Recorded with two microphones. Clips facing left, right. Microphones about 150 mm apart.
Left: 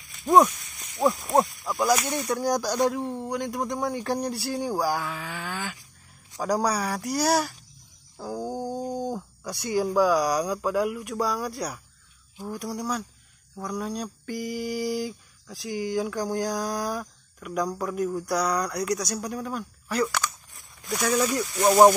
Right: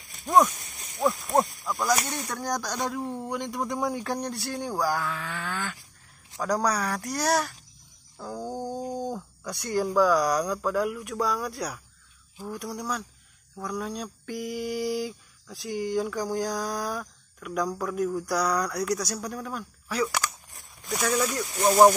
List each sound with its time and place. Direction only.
1.0 s speech: 15° left (ahead or behind)
2.0 s mantra: 10° left (ahead or behind)
8.2 s a sound: 5° left (ahead or behind)
9.4 s mantra: 5° left (ahead or behind)
21.5 s speech: 30° left (ahead or behind)